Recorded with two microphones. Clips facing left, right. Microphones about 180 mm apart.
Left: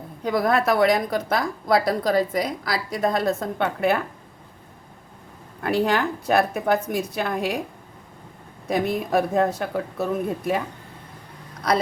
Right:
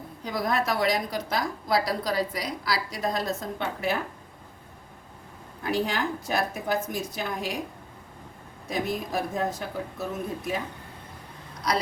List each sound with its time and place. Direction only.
0.3 s a woman's voice: 60° left (ahead or behind)
5.6 s a woman's voice: 60° left (ahead or behind)
8.6 s a woman's voice: 60° left (ahead or behind)